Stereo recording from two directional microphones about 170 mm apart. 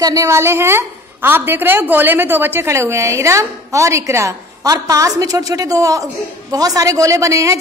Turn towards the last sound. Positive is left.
turn(degrees=-20)  # may be behind; listen again after turning